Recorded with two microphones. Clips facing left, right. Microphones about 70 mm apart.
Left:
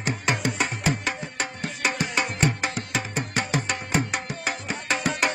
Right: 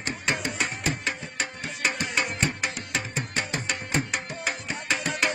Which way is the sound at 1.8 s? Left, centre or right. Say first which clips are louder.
Left 2 dB; centre.